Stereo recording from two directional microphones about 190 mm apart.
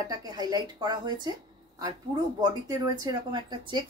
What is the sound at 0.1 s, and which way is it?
A woman's voice, 20° right (ahead or behind).